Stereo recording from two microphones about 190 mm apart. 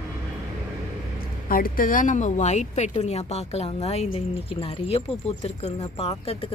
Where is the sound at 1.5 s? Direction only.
50° left (ahead or behind).